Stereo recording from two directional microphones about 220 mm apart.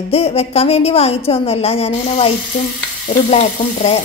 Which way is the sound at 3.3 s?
30° left (ahead or behind).